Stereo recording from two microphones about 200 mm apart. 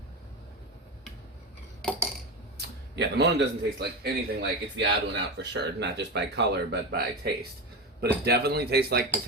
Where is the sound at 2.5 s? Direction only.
55° right (ahead or behind).